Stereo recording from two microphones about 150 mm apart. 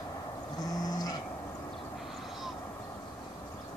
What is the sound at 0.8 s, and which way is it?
Dog, 25° left (ahead or behind).